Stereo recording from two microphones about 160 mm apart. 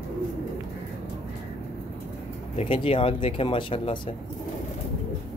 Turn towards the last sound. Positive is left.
turn(degrees=35)  # may be behind; listen again after turning